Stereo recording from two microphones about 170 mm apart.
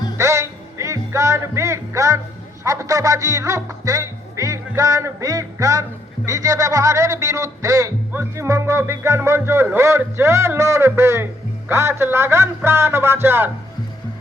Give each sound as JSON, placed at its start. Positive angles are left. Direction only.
{"t": 0.2, "sound": "music", "side_deg": -15}